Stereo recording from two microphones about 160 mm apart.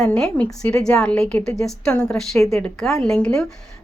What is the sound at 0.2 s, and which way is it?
A woman's voice, 5° left (ahead or behind).